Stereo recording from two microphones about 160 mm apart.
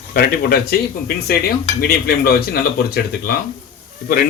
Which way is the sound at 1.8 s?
75° left (ahead or behind).